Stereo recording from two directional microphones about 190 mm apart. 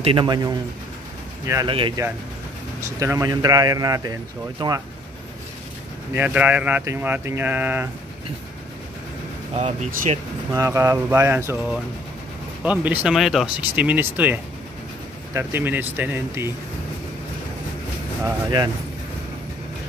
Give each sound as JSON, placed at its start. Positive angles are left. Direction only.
{"t": 0.0, "sound": "speech", "side_deg": -25}
{"t": 1.7, "sound": "speech", "side_deg": -25}
{"t": 3.0, "sound": "speech", "side_deg": -15}
{"t": 6.1, "sound": "speech", "side_deg": -10}
{"t": 10.5, "sound": "speech", "side_deg": -15}
{"t": 18.2, "sound": "speech", "side_deg": -20}